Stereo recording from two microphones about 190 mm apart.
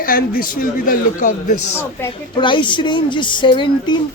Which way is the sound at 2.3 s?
25° left (ahead or behind).